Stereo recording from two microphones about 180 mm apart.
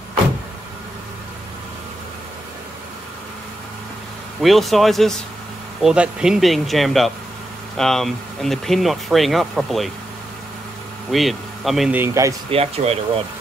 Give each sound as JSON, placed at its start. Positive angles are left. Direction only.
{"t": 4.4, "sound": "speech", "side_deg": 0}
{"t": 11.1, "sound": "speech", "side_deg": 0}
{"t": 12.0, "sound": "speech", "side_deg": -15}
{"t": 12.4, "sound": "speech", "side_deg": -35}